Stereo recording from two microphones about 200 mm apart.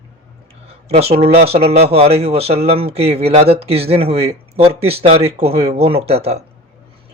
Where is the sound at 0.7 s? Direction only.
30° right (ahead or behind).